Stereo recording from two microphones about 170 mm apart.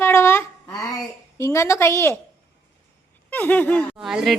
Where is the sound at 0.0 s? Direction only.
15° left (ahead or behind).